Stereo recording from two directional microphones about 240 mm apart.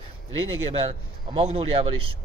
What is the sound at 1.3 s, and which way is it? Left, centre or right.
Speech, right.